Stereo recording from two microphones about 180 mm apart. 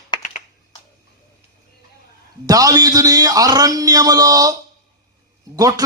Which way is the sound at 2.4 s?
20° right (ahead or behind).